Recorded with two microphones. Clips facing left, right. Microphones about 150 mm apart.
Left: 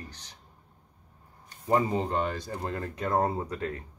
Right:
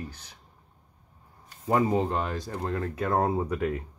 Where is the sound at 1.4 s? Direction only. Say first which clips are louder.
Right 1 dB; 5° right (ahead or behind).